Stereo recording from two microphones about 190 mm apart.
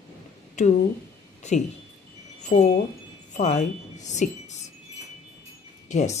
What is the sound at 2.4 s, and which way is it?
Speech, 35° left (ahead or behind).